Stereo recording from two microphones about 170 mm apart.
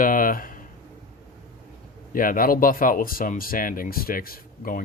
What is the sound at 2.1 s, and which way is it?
Speech, 55° left (ahead or behind).